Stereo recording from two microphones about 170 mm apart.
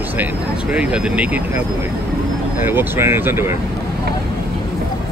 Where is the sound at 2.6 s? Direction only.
10° right (ahead or behind).